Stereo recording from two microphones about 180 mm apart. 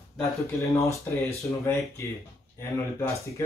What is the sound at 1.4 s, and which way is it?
Speech, 15° left (ahead or behind).